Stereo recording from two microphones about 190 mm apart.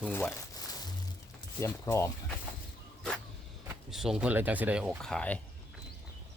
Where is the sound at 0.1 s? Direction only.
10° left (ahead or behind).